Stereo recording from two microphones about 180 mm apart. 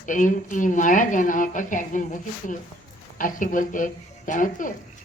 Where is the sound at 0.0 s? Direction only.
45° left (ahead or behind).